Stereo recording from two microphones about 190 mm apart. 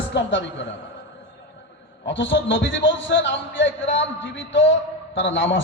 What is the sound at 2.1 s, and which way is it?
A man's voice, 75° left (ahead or behind).